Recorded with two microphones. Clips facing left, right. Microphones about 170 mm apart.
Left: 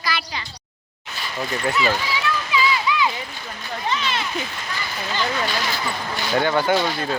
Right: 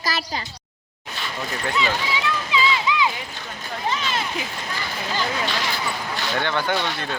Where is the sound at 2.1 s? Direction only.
20° right (ahead or behind).